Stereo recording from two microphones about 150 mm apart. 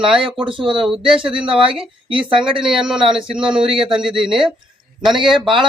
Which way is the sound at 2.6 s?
5° right (ahead or behind).